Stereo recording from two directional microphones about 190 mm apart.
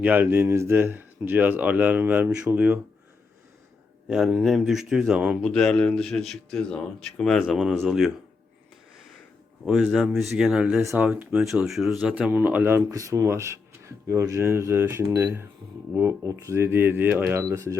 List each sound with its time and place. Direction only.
0.0 s speech: 10° right (ahead or behind)
4.1 s a man's voice: centre (ahead or behind)
9.6 s a man's voice: centre (ahead or behind)